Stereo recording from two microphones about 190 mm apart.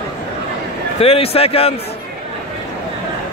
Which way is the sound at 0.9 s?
30° left (ahead or behind).